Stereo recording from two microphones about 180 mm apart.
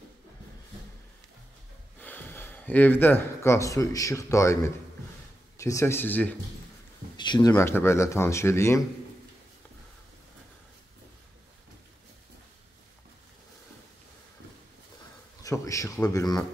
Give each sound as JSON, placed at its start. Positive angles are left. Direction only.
{"t": 2.0, "sound": "speech", "side_deg": 10}
{"t": 7.2, "sound": "speech", "side_deg": 25}
{"t": 15.4, "sound": "a man's voice", "side_deg": 20}